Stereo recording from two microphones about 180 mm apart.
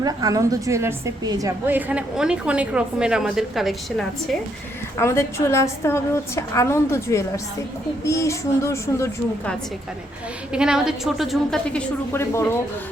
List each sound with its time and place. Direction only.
0.0 s a woman's voice: 20° right (ahead or behind); by 4.4 s centre (ahead or behind)
4.9 s a woman's voice: 15° left (ahead or behind)
10.5 s a woman's voice: 5° right (ahead or behind); by 12.5 s 15° left (ahead or behind)